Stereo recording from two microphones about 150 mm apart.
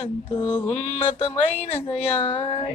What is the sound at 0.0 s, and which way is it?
Mantra, 40° left (ahead or behind).